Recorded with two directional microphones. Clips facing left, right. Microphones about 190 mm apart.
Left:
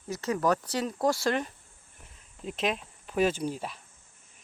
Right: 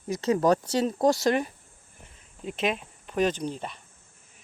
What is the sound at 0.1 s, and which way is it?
Speech, 20° right (ahead or behind).